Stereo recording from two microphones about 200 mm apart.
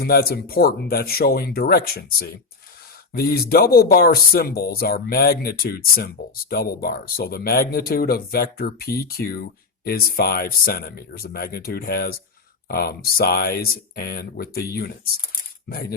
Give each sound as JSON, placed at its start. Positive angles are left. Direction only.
{"t": 0.0, "sound": "speech", "side_deg": 50}